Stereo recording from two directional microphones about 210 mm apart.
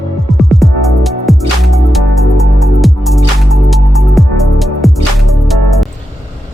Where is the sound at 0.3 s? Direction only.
Centre (ahead or behind).